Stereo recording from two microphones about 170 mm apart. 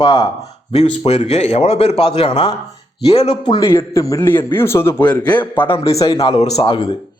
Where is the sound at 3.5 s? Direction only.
25° left (ahead or behind).